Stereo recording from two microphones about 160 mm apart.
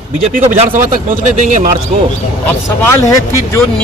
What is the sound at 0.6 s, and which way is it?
A man's voice, 50° right (ahead or behind).